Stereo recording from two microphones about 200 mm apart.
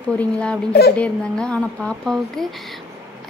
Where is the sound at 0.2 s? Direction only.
5° left (ahead or behind).